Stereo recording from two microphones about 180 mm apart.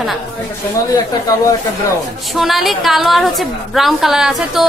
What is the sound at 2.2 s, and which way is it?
A woman's voice, centre (ahead or behind).